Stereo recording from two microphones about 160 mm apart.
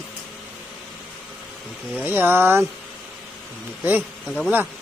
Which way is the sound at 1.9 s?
10° right (ahead or behind).